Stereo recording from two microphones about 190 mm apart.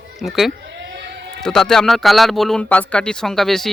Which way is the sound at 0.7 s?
65° right (ahead or behind).